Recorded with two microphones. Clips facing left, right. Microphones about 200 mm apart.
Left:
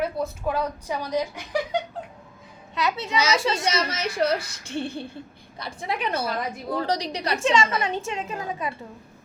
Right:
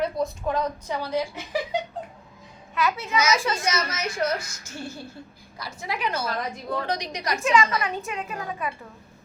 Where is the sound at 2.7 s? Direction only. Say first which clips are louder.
Even; 25° left (ahead or behind).